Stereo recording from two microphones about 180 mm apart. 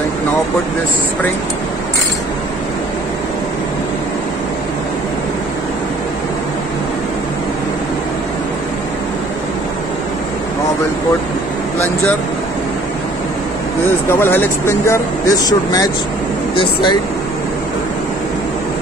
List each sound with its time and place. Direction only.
14.0 s speech: 10° left (ahead or behind)